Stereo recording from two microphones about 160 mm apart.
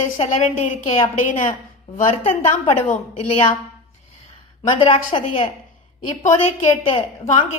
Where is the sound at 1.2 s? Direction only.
55° left (ahead or behind).